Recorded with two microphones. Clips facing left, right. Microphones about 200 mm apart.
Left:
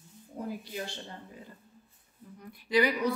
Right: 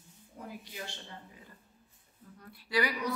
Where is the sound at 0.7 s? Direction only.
40° left (ahead or behind).